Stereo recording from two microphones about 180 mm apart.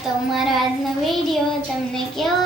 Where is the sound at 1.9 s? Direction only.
Centre (ahead or behind).